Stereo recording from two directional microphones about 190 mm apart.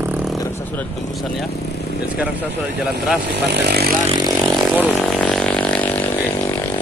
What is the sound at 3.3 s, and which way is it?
Speech, 60° right (ahead or behind).